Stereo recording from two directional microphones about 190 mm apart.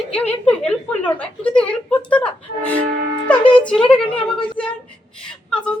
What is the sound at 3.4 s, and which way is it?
Speech, 25° left (ahead or behind).